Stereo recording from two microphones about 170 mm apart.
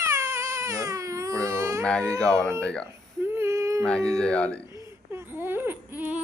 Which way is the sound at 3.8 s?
5° left (ahead or behind).